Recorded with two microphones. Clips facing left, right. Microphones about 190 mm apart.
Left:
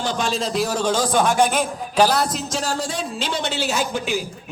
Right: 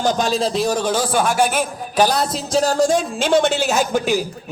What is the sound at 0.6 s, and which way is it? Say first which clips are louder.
A man's voice: right 2 dB; 15° right (ahead or behind).